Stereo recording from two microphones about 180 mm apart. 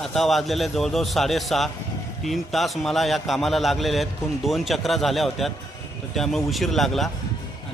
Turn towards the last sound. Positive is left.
turn(degrees=0)  # may be behind; listen again after turning